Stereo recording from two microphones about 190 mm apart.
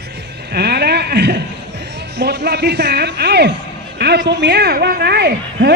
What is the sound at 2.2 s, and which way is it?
Speech, 65° right (ahead or behind).